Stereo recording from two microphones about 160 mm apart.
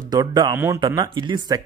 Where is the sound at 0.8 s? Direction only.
25° right (ahead or behind).